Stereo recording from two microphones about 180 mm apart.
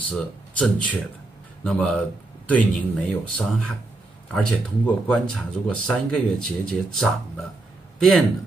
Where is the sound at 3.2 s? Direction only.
5° left (ahead or behind).